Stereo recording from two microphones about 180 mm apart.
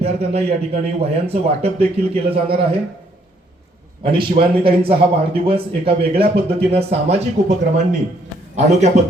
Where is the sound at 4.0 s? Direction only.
30° right (ahead or behind).